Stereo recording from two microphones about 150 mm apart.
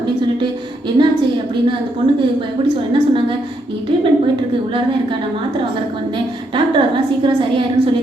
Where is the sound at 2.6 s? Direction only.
35° right (ahead or behind).